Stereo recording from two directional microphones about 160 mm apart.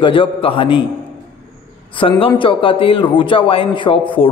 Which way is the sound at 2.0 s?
35° left (ahead or behind).